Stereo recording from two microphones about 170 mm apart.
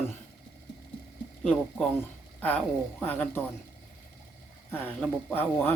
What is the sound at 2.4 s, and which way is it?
Speech, 10° left (ahead or behind).